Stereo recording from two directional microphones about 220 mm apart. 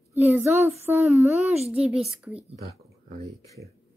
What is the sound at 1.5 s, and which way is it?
Speech, 5° right (ahead or behind).